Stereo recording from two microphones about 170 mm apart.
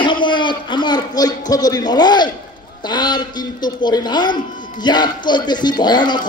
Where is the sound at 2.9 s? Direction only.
25° left (ahead or behind).